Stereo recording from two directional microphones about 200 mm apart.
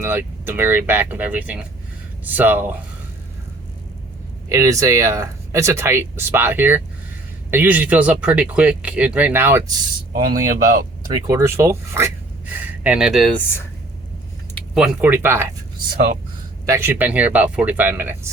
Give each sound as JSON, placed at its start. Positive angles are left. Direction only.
{"t": 0.0, "sound": "speech", "side_deg": -10}
{"t": 4.4, "sound": "speech", "side_deg": -15}
{"t": 10.1, "sound": "speech", "side_deg": -45}
{"t": 11.3, "sound": "speech", "side_deg": -15}
{"t": 14.8, "sound": "speech", "side_deg": -10}
{"t": 16.6, "sound": "speech", "side_deg": -10}